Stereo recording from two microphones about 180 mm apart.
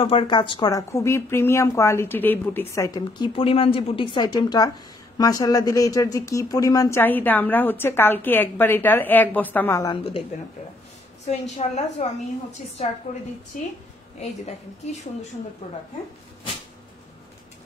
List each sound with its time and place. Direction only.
0.0 s a woman's voice: 30° left (ahead or behind)
11.2 s a woman's voice: 40° left (ahead or behind)
13.5 s a woman's voice: 45° left (ahead or behind)